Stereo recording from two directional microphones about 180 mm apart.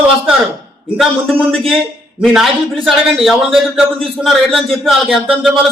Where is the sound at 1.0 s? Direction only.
5° right (ahead or behind).